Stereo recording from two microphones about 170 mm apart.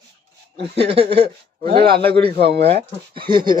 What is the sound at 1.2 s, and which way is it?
Speech, 70° right (ahead or behind).